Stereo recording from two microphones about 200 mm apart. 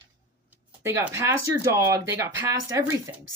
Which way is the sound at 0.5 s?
10° right (ahead or behind).